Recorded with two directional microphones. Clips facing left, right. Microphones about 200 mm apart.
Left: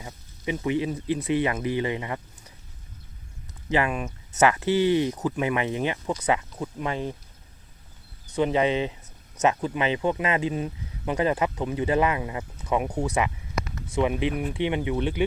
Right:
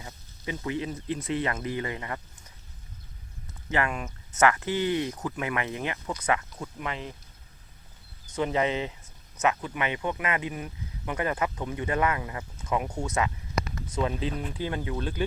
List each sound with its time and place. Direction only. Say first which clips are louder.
0.0 s speech: left 5 dB; 15° left (ahead or behind)
3.7 s speech: left 4 dB; 20° left (ahead or behind)
8.4 s speech: left 4 dB; 20° left (ahead or behind)
13.1 s a sound: left 2 dB; 15° left (ahead or behind)
14.3 s speech: left 6 dB; 20° left (ahead or behind)